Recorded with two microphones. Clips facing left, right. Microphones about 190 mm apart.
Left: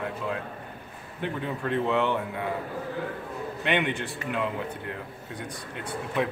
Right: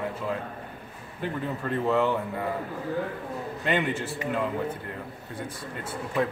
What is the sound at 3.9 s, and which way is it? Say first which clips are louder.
Speech: right 2 dB; centre (ahead or behind).